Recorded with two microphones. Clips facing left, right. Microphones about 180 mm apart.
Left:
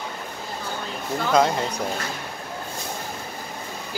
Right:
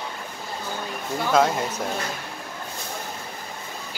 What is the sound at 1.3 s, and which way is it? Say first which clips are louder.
Speech: even; 5° right (ahead or behind).